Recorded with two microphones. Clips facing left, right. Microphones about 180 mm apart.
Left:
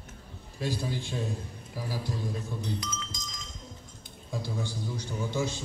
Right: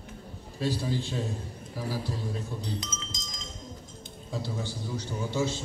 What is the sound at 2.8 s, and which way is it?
Chink, 20° right (ahead or behind).